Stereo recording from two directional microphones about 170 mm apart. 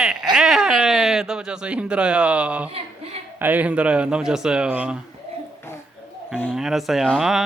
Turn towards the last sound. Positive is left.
turn(degrees=0)  # may be behind; listen again after turning